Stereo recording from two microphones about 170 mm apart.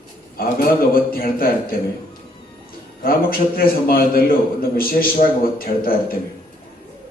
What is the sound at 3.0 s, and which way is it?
A man's voice, 60° left (ahead or behind).